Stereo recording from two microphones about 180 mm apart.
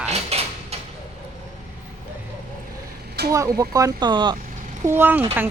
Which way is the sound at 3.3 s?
20° right (ahead or behind).